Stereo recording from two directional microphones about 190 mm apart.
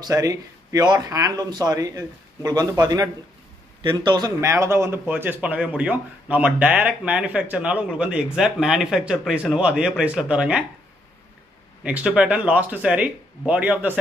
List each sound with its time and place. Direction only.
0.0 s speech: 20° right (ahead or behind)
11.8 s speech: 5° right (ahead or behind)